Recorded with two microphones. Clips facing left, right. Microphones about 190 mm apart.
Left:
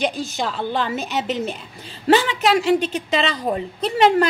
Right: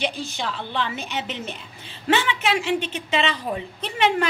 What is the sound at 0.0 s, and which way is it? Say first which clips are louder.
A woman's voice: left 4 dB; 45° left (ahead or behind).